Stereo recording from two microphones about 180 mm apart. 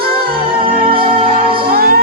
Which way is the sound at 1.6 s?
55° right (ahead or behind).